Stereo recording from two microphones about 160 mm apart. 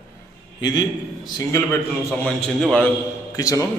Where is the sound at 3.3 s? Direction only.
20° left (ahead or behind).